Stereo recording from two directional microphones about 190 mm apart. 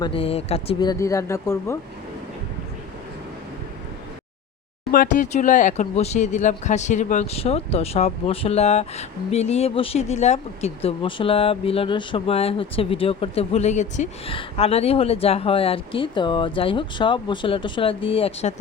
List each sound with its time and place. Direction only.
0.0 s speech: 30° left (ahead or behind); by 1.8 s 15° left (ahead or behind)
4.9 s speech: 45° left (ahead or behind)